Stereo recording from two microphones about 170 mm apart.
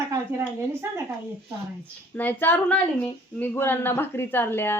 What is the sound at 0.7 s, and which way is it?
Speech, 15° right (ahead or behind).